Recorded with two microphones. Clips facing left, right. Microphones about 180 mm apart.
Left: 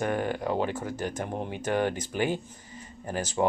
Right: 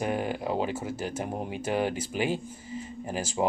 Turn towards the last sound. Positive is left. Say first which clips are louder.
# left 1 dB
turn(degrees=-10)  # may be behind; listen again after turning